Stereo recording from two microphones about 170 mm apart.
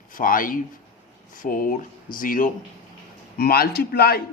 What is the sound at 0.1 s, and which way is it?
Speech, 55° left (ahead or behind).